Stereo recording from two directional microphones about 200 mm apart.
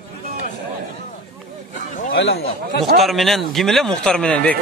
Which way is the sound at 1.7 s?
40° left (ahead or behind).